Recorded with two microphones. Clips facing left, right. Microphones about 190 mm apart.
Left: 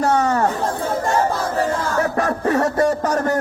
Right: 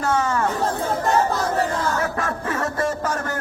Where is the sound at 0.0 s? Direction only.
35° left (ahead or behind).